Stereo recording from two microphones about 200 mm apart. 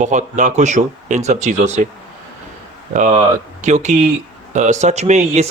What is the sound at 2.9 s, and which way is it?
Speech, 35° right (ahead or behind).